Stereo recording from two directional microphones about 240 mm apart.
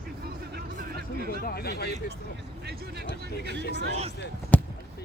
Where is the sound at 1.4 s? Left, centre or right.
Left.